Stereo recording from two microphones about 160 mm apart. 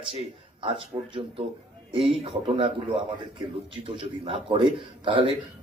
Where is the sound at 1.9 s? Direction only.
35° right (ahead or behind).